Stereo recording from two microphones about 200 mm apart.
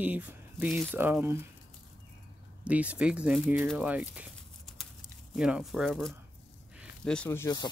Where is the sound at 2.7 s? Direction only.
5° right (ahead or behind).